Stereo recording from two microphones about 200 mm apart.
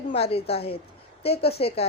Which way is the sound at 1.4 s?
50° left (ahead or behind).